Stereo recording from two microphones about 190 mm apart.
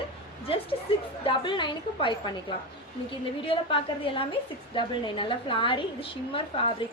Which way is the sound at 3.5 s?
25° left (ahead or behind).